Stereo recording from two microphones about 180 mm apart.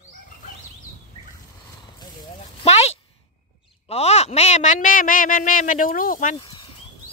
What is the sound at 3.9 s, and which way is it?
Speech, 35° left (ahead or behind).